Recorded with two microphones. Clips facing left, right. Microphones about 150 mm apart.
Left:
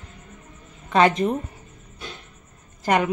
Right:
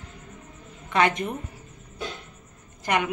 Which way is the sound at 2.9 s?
35° left (ahead or behind).